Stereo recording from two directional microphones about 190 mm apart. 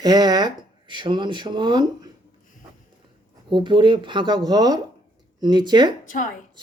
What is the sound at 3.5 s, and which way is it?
Speech, 25° right (ahead or behind).